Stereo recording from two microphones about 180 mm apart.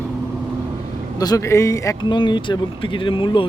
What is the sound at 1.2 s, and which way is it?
Speech, 20° left (ahead or behind).